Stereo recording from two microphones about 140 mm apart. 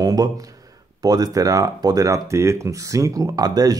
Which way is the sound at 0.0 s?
25° right (ahead or behind).